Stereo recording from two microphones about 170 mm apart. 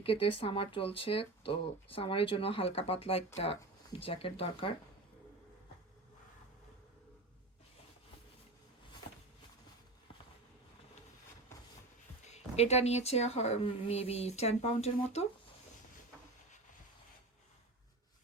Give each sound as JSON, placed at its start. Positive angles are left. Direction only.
{"t": 0.0, "sound": "speech", "side_deg": 35}
{"t": 12.2, "sound": "speech", "side_deg": 40}